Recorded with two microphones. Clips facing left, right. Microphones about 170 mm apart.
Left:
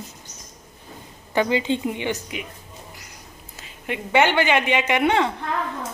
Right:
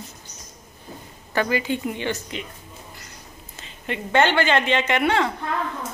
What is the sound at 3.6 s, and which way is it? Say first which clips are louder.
Speech: even; 10° left (ahead or behind).